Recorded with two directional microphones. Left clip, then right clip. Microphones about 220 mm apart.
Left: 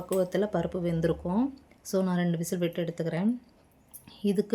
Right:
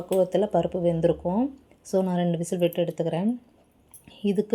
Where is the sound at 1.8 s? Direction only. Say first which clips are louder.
Right 4 dB; 5° right (ahead or behind).